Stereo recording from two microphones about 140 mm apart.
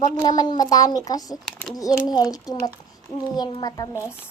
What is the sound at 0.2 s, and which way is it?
A child's voice, 30° left (ahead or behind).